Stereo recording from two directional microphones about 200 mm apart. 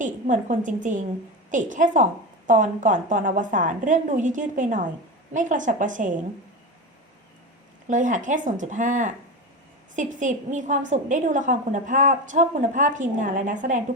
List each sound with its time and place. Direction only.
0.0 s a woman's voice: 40° right (ahead or behind)
7.9 s a woman's voice: 40° right (ahead or behind)